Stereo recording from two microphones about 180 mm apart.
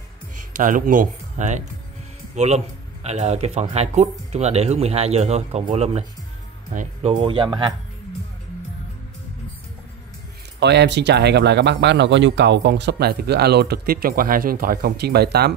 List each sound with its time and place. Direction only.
0.4 s speech: 45° right (ahead or behind); by 7.7 s 25° right (ahead or behind)
10.6 s speech: 70° right (ahead or behind)